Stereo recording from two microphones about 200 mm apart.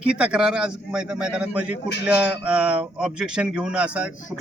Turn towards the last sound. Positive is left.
turn(degrees=-5)  # may be behind; listen again after turning